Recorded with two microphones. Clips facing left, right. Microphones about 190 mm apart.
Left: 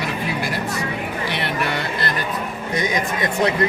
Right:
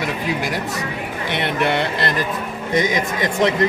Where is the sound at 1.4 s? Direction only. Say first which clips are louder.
Right 7 dB; 25° right (ahead or behind).